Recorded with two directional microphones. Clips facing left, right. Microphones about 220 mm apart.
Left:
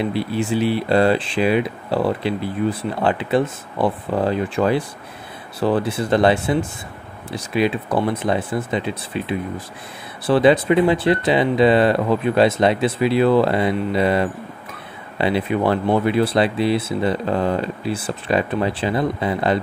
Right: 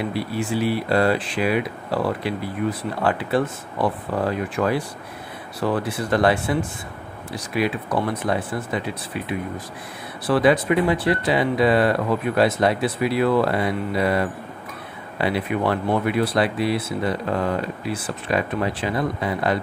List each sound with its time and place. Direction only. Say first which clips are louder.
0.0 s speech: left 4 dB; 25° left (ahead or behind)